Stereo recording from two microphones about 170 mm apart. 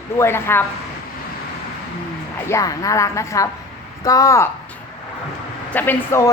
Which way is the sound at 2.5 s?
20° left (ahead or behind).